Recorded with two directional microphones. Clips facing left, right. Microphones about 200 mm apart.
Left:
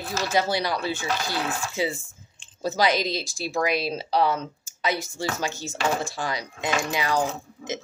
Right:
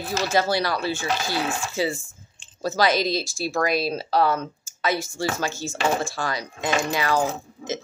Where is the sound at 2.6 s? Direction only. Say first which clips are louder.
Right 2 dB; 15° left (ahead or behind).